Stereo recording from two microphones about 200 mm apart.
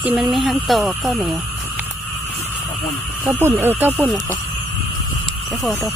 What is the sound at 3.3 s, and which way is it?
Speech, 10° right (ahead or behind).